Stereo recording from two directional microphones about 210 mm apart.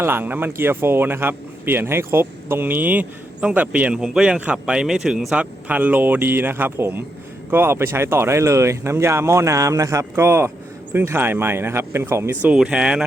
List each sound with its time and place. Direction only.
0.0 s speech: 10° right (ahead or behind)